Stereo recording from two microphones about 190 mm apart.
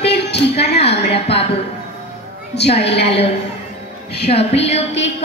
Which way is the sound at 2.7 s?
30° left (ahead or behind).